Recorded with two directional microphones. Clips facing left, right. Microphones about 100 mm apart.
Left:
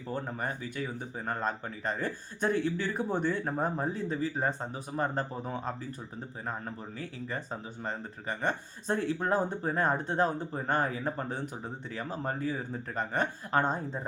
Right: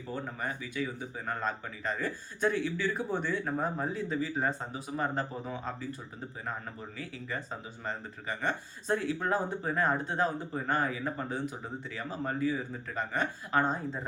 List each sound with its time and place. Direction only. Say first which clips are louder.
0.1 s speech: left 2 dB; 40° left (ahead or behind)
7.9 s speech: even; 35° left (ahead or behind)